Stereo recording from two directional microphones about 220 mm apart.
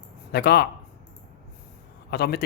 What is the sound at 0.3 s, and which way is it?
Speech, 45° left (ahead or behind).